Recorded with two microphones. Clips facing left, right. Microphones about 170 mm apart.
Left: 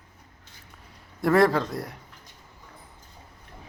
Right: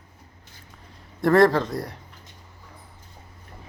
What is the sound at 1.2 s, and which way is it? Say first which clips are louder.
Speech: right 3 dB; centre (ahead or behind).